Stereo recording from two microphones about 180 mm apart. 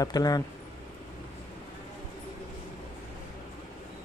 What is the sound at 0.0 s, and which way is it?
Speech, 20° left (ahead or behind).